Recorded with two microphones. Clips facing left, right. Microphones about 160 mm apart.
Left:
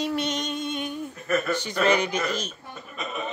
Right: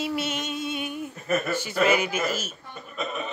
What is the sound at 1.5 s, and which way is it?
Speech, 10° right (ahead or behind).